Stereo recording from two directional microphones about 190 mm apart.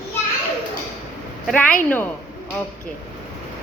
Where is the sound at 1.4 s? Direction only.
5° left (ahead or behind).